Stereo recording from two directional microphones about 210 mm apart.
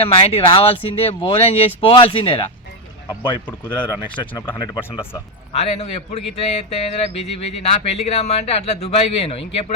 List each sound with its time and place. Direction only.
0.0 s speech: 25° left (ahead or behind)
3.7 s speech: 5° left (ahead or behind)
4.4 s speech: 20° left (ahead or behind)
5.5 s mantra: 30° left (ahead or behind)
7.6 s speech: 30° left (ahead or behind)